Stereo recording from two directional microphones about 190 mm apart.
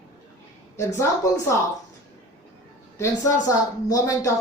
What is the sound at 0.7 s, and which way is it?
Speech, 15° left (ahead or behind).